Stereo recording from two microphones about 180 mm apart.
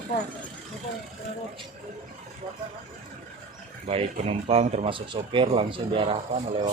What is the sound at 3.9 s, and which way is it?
Speech, 35° right (ahead or behind).